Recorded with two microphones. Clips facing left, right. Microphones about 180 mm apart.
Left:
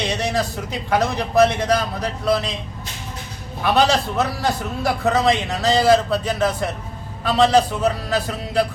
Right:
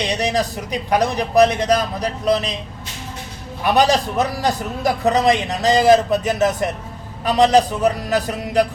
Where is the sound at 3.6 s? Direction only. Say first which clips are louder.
Right 2 dB; 15° right (ahead or behind).